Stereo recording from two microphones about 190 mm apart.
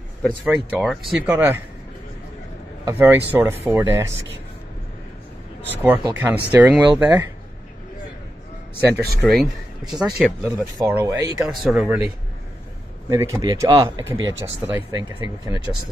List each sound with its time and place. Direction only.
0.5 s speech: 5° right (ahead or behind)
2.8 s speech: 10° right (ahead or behind)
5.8 s speech: 10° right (ahead or behind)
8.8 s speech: 15° right (ahead or behind)
9.2 s speech: centre (ahead or behind)
10.8 s speech: 15° right (ahead or behind)
11.3 s speech: 5° right (ahead or behind)
13.1 s speech: 15° right (ahead or behind)
14.1 s speech: 90° right
14.9 s speech: 25° right (ahead or behind)